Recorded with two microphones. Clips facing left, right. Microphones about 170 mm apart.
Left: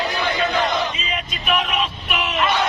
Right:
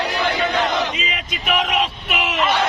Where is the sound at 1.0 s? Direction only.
90° right.